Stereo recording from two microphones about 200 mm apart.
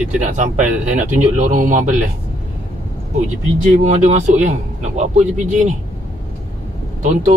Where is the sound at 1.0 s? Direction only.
40° right (ahead or behind).